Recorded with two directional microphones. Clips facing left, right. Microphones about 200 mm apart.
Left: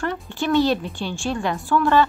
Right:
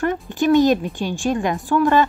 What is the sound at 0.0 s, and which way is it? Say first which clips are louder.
A woman's voice: right 6 dB; 15° right (ahead or behind).